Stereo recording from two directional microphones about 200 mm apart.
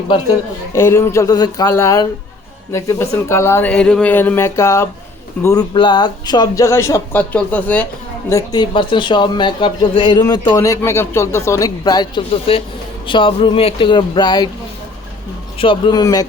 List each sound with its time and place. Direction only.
0.7 s a man's voice: 15° left (ahead or behind)
15.5 s a man's voice: 25° left (ahead or behind)